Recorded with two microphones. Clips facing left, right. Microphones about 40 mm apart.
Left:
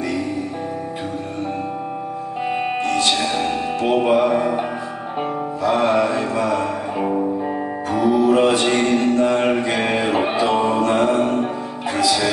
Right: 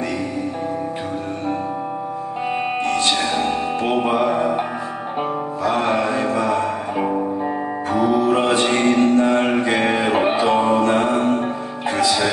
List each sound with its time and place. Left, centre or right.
3.3 s music: centre
3.9 s music: centre
6.0 s music: centre
8.0 s music: right
9.8 s music: centre
11.0 s music: right